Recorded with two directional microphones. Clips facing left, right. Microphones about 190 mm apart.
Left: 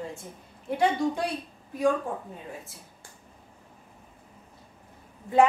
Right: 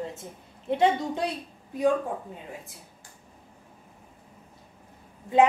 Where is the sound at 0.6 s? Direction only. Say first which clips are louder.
Right 1 dB; 25° right (ahead or behind).